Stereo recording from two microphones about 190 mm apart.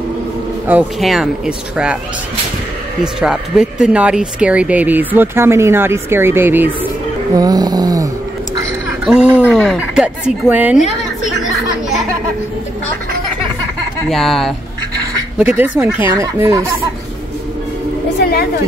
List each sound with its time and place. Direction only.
0.7 s speech: 5° right (ahead or behind)
3.0 s speech: 5° right (ahead or behind); by 8.1 s 20° right (ahead or behind)
9.0 s speech: 5° right (ahead or behind)
14.0 s speech: centre (ahead or behind); by 16.6 s 15° right (ahead or behind)
18.2 s a woman's voice: 55° left (ahead or behind)